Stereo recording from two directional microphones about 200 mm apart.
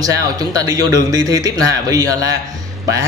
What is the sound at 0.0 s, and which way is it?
Speech, 15° right (ahead or behind).